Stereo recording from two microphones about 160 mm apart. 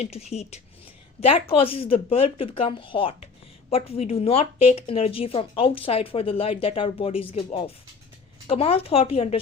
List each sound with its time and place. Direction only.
0.0 s speech: 45° left (ahead or behind)